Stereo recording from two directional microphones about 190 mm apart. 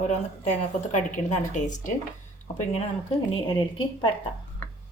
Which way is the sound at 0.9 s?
40° left (ahead or behind).